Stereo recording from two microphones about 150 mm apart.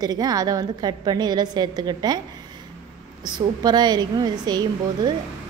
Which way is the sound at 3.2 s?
25° right (ahead or behind).